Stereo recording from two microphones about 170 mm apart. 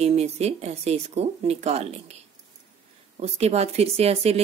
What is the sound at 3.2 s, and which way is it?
Speech, 40° right (ahead or behind).